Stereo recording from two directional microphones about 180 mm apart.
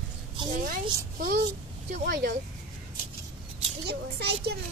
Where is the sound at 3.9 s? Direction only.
65° right (ahead or behind).